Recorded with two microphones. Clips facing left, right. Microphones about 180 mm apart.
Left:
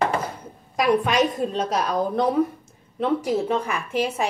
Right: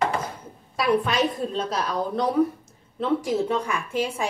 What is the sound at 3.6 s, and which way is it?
Speech, 65° left (ahead or behind).